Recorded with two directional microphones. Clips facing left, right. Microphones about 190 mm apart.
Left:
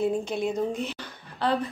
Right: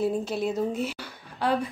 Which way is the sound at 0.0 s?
5° right (ahead or behind).